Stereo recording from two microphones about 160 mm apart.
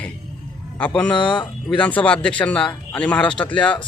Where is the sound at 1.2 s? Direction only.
30° left (ahead or behind).